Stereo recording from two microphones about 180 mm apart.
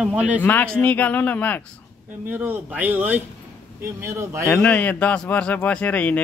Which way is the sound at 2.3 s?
10° right (ahead or behind).